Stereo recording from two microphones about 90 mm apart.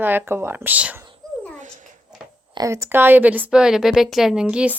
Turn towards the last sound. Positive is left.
turn(degrees=-15)  # may be behind; listen again after turning